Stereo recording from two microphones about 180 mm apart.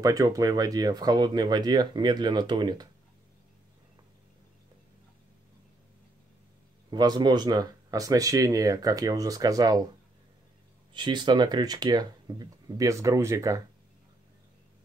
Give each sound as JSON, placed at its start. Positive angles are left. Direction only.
{"t": 0.0, "sound": "speech", "side_deg": -20}
{"t": 6.9, "sound": "speech", "side_deg": -25}
{"t": 10.9, "sound": "speech", "side_deg": -25}